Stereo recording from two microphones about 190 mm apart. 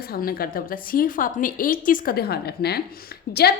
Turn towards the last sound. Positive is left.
turn(degrees=55)  # may be behind; listen again after turning